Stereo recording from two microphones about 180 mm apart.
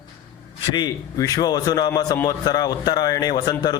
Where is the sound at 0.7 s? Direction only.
20° left (ahead or behind).